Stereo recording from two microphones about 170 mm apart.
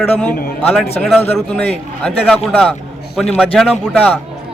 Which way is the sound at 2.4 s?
Centre (ahead or behind).